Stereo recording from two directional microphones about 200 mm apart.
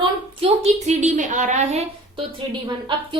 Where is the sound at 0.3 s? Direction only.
30° right (ahead or behind).